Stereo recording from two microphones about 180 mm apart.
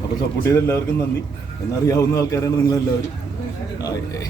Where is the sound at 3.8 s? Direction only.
20° left (ahead or behind).